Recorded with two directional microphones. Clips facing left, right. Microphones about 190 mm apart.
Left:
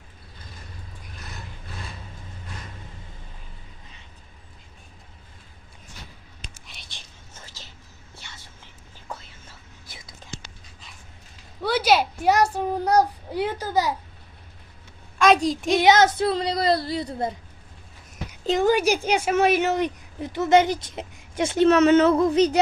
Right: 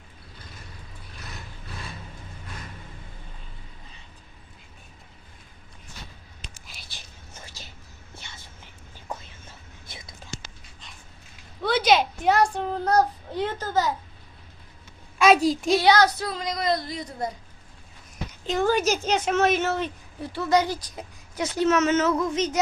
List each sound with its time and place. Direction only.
6.7 s whispering: 5° right (ahead or behind)
11.6 s a child's voice: 10° left (ahead or behind)
15.2 s a child's voice: 5° right (ahead or behind)
15.8 s speech: 20° left (ahead or behind)
18.5 s a woman's voice: 15° left (ahead or behind); by 22.6 s 35° left (ahead or behind)